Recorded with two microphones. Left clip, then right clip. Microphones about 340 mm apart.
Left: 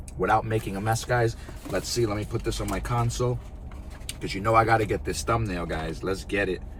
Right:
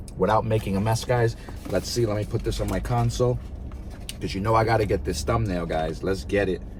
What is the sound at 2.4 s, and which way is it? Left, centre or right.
Speech, centre.